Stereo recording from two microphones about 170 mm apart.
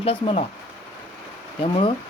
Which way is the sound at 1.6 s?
30° left (ahead or behind).